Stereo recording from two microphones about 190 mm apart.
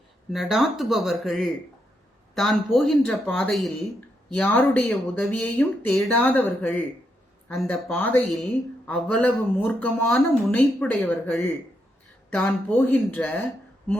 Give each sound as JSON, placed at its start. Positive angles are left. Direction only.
{"t": 0.3, "sound": "speech", "side_deg": 0}